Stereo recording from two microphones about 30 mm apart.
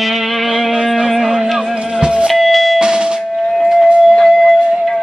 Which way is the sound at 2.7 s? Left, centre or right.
Right.